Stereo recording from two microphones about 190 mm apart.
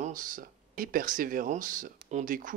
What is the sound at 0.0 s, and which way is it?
Speech, 45° right (ahead or behind).